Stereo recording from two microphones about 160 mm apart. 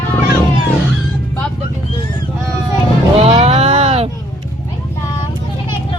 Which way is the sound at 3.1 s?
40° right (ahead or behind).